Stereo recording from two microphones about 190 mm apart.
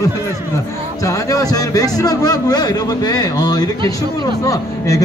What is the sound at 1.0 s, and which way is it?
A man's voice, 15° left (ahead or behind).